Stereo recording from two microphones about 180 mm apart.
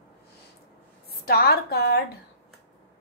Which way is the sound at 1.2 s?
60° left (ahead or behind).